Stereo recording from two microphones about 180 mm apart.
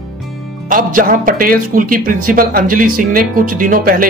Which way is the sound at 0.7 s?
50° right (ahead or behind).